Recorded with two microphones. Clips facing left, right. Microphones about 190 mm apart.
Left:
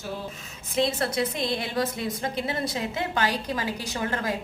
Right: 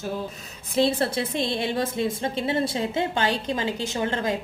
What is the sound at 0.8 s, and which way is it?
A woman's voice, 30° right (ahead or behind).